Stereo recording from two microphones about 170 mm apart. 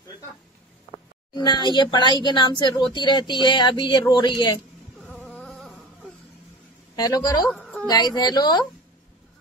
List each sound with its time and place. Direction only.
1.3 s speech: 25° left (ahead or behind)
5.1 s a sound: 5° left (ahead or behind)
7.0 s speech: 25° left (ahead or behind)